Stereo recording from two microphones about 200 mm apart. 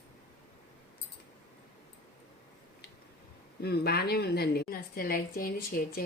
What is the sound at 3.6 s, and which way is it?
A woman's voice, 55° left (ahead or behind).